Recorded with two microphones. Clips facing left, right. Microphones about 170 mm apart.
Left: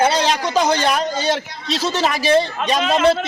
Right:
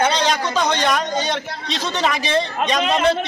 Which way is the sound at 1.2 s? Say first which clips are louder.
Left 3 dB; 5° left (ahead or behind).